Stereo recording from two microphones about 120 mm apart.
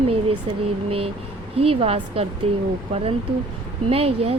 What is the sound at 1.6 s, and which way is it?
Speech, 55° right (ahead or behind).